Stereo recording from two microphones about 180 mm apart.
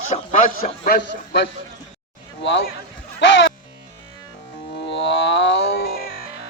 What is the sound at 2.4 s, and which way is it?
Speech, 80° left.